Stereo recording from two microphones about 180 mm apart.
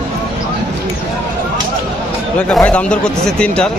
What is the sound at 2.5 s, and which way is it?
Speech, 5° left (ahead or behind).